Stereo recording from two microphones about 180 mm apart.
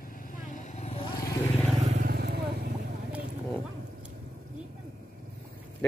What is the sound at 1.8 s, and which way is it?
Vehicle, 40° right (ahead or behind).